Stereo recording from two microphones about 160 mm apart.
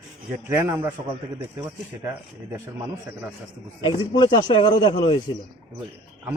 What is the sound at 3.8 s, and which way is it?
Speech, 25° left (ahead or behind).